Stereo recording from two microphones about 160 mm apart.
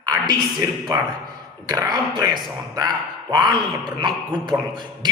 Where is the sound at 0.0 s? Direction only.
25° right (ahead or behind).